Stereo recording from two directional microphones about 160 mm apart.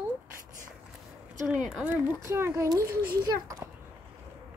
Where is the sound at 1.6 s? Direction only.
10° right (ahead or behind).